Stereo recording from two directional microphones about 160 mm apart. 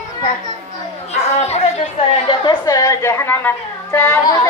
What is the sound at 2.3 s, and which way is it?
A woman's voice, 25° left (ahead or behind).